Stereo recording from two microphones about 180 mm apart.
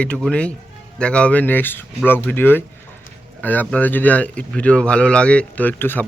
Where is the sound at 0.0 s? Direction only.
5° left (ahead or behind).